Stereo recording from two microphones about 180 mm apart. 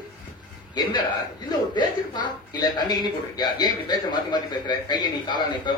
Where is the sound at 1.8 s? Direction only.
25° left (ahead or behind).